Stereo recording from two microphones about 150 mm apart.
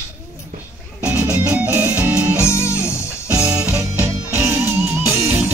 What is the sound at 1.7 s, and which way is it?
Music, 15° right (ahead or behind).